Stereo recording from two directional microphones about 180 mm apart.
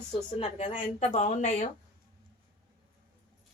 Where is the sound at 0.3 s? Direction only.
30° left (ahead or behind).